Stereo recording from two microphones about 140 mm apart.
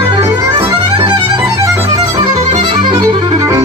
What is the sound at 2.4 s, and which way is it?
Music, 55° right (ahead or behind).